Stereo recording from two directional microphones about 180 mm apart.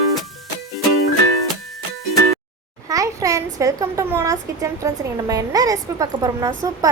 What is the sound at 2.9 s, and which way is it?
A child's voice, 20° right (ahead or behind).